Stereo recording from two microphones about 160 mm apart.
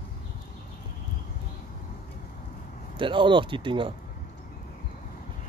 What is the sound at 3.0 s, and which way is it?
Speech, 30° right (ahead or behind).